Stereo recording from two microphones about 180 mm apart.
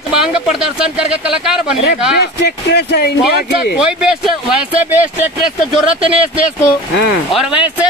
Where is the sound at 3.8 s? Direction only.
5° right (ahead or behind).